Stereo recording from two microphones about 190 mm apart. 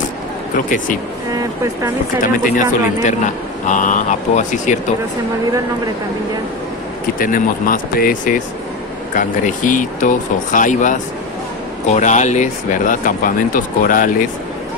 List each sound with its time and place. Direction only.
1.3 s speech: 15° right (ahead or behind)
2.3 s speech: 45° left (ahead or behind)
7.2 s speech: 45° left (ahead or behind)